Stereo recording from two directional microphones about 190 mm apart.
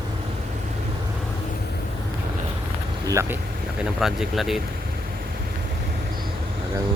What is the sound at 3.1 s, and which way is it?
Speech, 15° right (ahead or behind).